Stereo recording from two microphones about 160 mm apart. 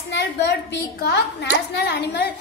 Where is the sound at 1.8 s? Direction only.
90° left.